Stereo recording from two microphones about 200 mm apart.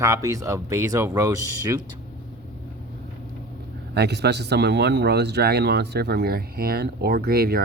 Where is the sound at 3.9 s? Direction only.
55° right (ahead or behind).